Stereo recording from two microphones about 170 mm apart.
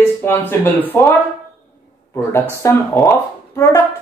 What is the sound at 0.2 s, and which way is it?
Speech, 10° left (ahead or behind).